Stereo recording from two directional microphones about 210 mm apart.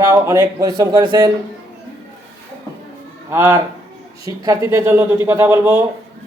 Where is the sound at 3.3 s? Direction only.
10° right (ahead or behind).